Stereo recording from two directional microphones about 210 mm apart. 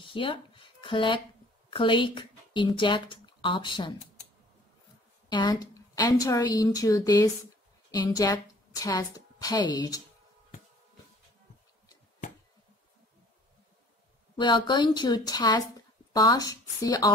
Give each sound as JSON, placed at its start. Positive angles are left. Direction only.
{"t": 0.1, "sound": "speech", "side_deg": 25}
{"t": 5.3, "sound": "a woman's voice", "side_deg": 20}
{"t": 14.3, "sound": "a woman's voice", "side_deg": 20}